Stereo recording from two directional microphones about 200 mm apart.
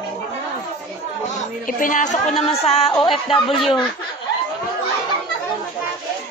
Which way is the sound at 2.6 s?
30° left (ahead or behind).